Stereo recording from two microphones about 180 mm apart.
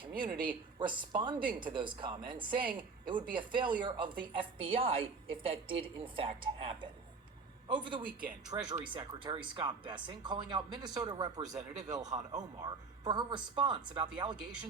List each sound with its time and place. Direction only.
0.1 s speech: 50° right (ahead or behind)
0.8 s speech: 25° right (ahead or behind)
1.4 s speech: 50° right (ahead or behind)
1.6 s a woman's voice: 25° right (ahead or behind)
7.7 s speech: 25° right (ahead or behind)